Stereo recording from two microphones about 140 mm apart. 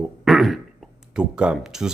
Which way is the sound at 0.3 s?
Centre (ahead or behind).